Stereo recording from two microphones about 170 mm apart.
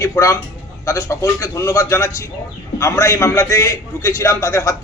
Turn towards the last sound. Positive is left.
turn(degrees=15)  # may be behind; listen again after turning